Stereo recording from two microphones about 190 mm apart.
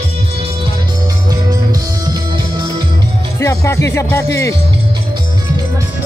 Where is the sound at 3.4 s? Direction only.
15° left (ahead or behind).